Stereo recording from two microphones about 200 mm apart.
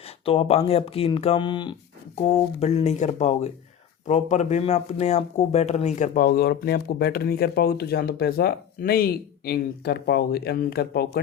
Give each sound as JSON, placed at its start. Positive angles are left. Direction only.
{"t": 0.3, "sound": "speech", "side_deg": 30}
{"t": 6.2, "sound": "speech", "side_deg": 55}